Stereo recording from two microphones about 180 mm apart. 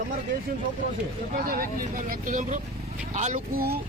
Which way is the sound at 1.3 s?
55° right (ahead or behind).